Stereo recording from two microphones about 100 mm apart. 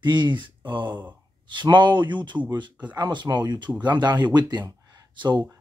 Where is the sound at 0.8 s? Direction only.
15° right (ahead or behind).